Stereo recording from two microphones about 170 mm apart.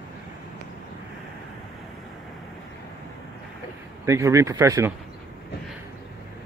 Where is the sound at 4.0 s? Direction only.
15° right (ahead or behind).